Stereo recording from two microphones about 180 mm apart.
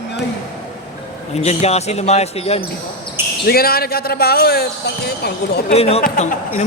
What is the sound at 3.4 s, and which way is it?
A man's voice, 55° left (ahead or behind).